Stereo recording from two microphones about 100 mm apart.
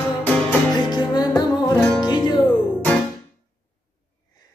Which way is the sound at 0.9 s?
45° left (ahead or behind).